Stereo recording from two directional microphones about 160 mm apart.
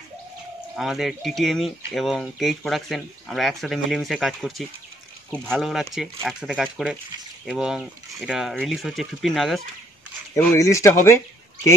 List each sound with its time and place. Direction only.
0.7 s speech: centre (ahead or behind)
10.5 s speech: 20° left (ahead or behind)